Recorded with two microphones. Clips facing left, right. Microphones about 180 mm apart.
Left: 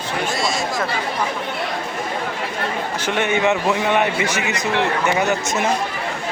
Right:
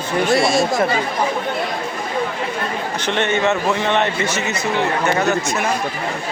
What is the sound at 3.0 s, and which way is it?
A man's voice, 10° left (ahead or behind).